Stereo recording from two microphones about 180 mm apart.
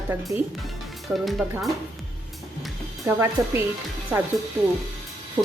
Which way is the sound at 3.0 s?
15° right (ahead or behind).